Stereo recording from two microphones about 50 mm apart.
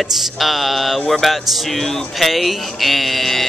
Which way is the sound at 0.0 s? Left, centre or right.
Centre.